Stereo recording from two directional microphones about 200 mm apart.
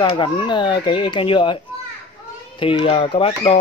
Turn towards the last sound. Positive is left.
turn(degrees=25)  # may be behind; listen again after turning